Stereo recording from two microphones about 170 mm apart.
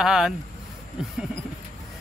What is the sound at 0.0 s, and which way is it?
Speech, 5° right (ahead or behind).